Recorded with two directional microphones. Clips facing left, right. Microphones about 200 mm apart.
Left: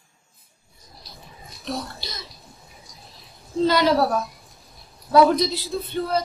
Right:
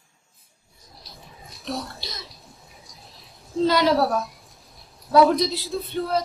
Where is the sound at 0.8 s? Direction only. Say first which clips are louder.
Left 1 dB; centre (ahead or behind).